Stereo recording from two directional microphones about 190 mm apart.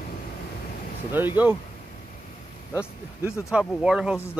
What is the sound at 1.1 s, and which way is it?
Speech, 10° right (ahead or behind).